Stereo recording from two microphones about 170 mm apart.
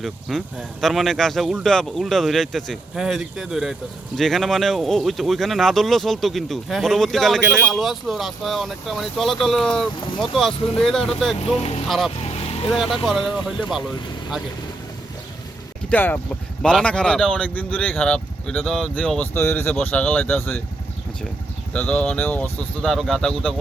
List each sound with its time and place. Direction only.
0.0 s speech: centre (ahead or behind)
11.3 s speech: 40° left (ahead or behind)
11.9 s speech: centre (ahead or behind)
12.2 s vehicle: 35° left (ahead or behind)
12.7 s speech: centre (ahead or behind)
15.9 s speech: 10° left (ahead or behind)
21.7 s speech: 5° left (ahead or behind)